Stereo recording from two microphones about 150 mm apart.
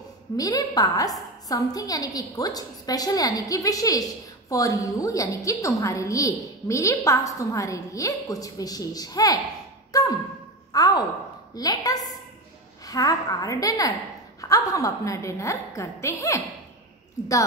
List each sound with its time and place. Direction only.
0.4 s a woman's voice: 25° left (ahead or behind)
9.9 s a sound: 25° left (ahead or behind)
11.5 s a woman's voice: 25° left (ahead or behind)